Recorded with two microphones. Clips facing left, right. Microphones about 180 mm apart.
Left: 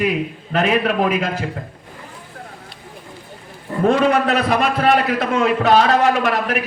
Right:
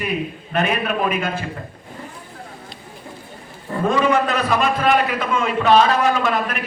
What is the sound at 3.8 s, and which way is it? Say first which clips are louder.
A man's voice: left 3 dB; 65° left (ahead or behind).